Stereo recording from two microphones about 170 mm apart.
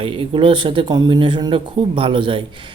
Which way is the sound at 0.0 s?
30° right (ahead or behind).